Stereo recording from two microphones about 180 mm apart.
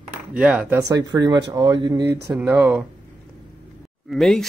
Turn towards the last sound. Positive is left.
turn(degrees=0)  # may be behind; listen again after turning